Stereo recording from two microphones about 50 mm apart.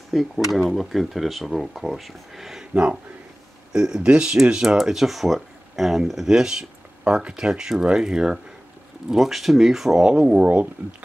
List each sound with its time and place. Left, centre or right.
0.1 s speech: centre
2.7 s speech: right
4.7 s speech: centre
10.4 s speech: right